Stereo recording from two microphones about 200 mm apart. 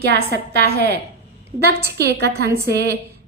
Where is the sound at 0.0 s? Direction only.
55° right (ahead or behind).